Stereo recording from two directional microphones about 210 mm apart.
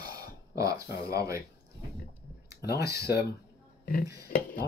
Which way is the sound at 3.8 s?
45° left (ahead or behind).